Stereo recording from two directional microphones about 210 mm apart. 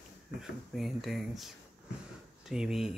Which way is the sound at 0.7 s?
Centre (ahead or behind).